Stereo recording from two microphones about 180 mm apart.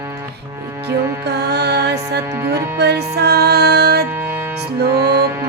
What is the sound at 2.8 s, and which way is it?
A woman's voice, 65° right (ahead or behind).